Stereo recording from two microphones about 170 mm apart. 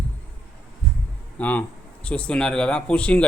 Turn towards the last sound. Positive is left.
turn(degrees=5)  # may be behind; listen again after turning